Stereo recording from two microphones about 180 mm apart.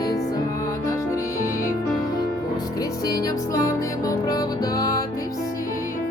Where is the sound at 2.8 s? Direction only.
20° left (ahead or behind).